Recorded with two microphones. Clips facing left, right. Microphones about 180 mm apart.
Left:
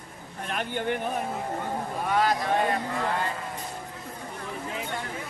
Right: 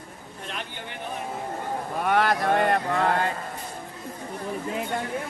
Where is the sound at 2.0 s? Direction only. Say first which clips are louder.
Right 3 dB; 60° right (ahead or behind).